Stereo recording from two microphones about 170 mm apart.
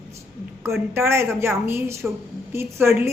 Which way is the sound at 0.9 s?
15° right (ahead or behind).